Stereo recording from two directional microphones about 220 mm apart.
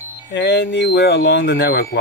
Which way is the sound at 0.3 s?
50° left (ahead or behind).